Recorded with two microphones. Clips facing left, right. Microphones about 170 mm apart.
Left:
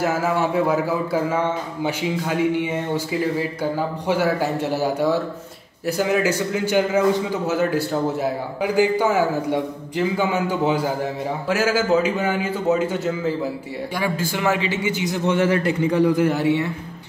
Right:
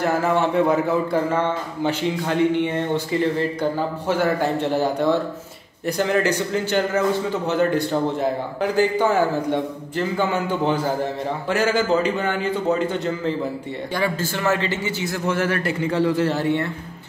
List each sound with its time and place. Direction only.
0.0 s a man's voice: 5° left (ahead or behind)